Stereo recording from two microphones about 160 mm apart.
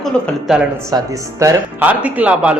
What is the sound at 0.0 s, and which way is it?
Speech, centre (ahead or behind).